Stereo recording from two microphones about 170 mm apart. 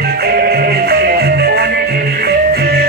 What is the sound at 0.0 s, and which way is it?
Music, 65° right (ahead or behind).